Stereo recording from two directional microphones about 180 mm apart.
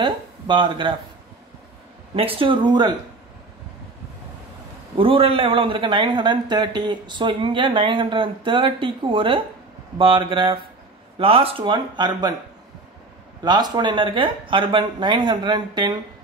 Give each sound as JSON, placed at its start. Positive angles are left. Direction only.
{"t": 0.0, "sound": "speech", "side_deg": -25}
{"t": 2.1, "sound": "a man's voice", "side_deg": -30}
{"t": 4.9, "sound": "a man's voice", "side_deg": -30}
{"t": 13.4, "sound": "a man's voice", "side_deg": -25}